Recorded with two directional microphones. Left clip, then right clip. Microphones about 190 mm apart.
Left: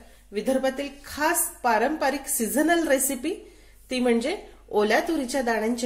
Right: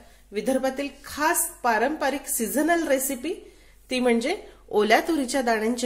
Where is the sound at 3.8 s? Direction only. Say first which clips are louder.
Right 1 dB; 15° right (ahead or behind).